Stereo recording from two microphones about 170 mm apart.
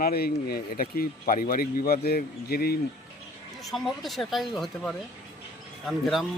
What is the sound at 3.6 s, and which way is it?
A man's voice, centre (ahead or behind).